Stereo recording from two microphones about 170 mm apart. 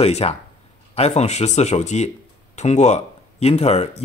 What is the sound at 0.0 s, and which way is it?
Speech, 35° left (ahead or behind).